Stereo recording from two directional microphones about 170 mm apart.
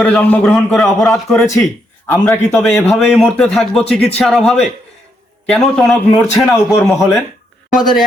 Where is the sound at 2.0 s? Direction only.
10° left (ahead or behind).